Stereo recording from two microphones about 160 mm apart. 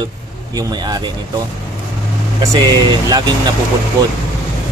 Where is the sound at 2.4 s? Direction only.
25° right (ahead or behind).